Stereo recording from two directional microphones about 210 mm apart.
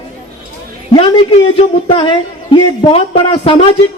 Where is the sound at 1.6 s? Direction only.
25° left (ahead or behind).